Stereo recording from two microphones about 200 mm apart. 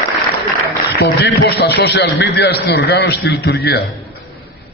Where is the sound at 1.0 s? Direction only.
55° left (ahead or behind).